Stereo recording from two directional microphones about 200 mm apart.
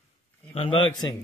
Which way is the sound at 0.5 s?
25° left (ahead or behind).